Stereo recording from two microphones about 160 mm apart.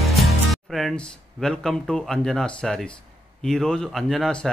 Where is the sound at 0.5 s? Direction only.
Centre (ahead or behind).